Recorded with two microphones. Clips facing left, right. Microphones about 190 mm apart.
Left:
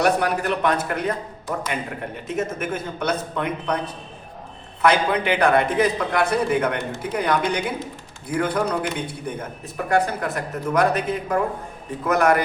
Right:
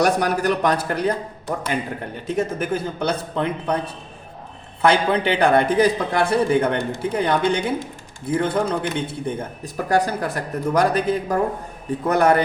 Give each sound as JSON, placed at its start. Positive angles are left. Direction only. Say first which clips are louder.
{"t": 0.0, "sound": "a man's voice", "louder": "right 2 dB", "side_deg": -40}
{"t": 2.2, "sound": "a man's voice", "louder": "right 3 dB", "side_deg": -35}
{"t": 4.8, "sound": "a man's voice", "louder": "right 1 dB", "side_deg": -30}